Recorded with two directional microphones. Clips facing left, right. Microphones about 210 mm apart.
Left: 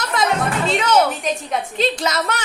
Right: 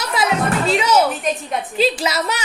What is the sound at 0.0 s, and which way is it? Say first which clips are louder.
Music: even; 5° right (ahead or behind).